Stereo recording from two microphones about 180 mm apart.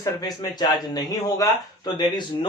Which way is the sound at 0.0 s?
20° left (ahead or behind).